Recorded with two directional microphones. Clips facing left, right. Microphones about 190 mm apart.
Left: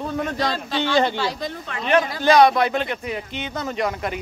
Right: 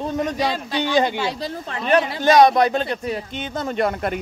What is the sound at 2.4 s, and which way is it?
Speech, 40° right (ahead or behind).